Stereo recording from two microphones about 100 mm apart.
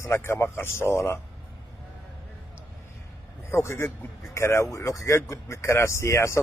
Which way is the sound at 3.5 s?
25° left (ahead or behind).